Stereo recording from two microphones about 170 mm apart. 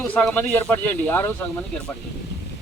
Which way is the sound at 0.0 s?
10° left (ahead or behind).